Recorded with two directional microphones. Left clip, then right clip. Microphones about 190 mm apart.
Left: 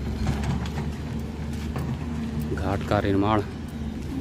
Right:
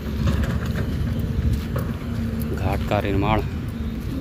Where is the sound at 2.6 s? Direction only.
20° left (ahead or behind).